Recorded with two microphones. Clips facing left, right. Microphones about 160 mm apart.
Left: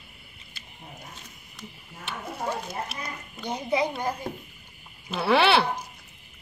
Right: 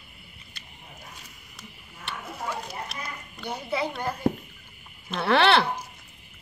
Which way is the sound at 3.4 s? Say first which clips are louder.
Left 3 dB; 15° left (ahead or behind).